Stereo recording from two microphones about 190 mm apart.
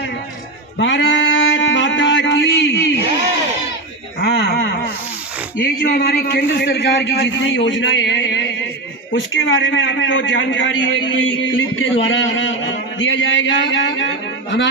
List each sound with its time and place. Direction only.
0.7 s a sound: 70° left (ahead or behind)
4.2 s a man's voice: 60° left (ahead or behind)
9.1 s a man's voice: 85° left; by 14.7 s 70° left (ahead or behind)